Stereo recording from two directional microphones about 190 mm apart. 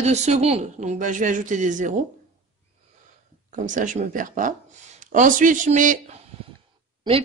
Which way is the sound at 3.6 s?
40° right (ahead or behind).